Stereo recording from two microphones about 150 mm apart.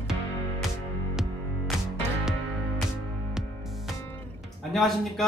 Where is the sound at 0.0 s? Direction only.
5° right (ahead or behind).